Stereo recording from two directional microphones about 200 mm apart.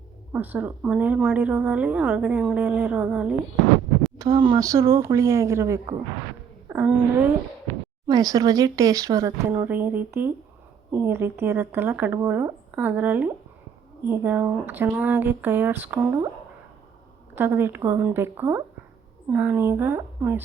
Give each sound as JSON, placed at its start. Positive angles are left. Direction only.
{"t": 0.3, "sound": "speech", "side_deg": -10}
{"t": 4.2, "sound": "speech", "side_deg": -20}
{"t": 17.3, "sound": "speech", "side_deg": -10}